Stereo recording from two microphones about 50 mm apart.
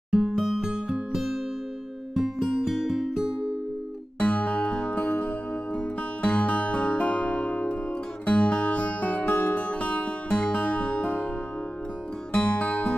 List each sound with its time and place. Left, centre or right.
0.1 s music: centre
1.1 s music: centre
4.2 s music: left
12.4 s music: left